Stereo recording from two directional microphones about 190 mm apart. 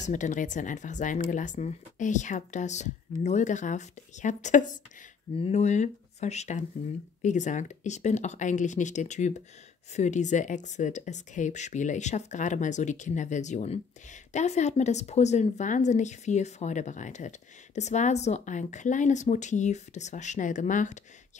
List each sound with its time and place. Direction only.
0.0 s speech: 40° left (ahead or behind)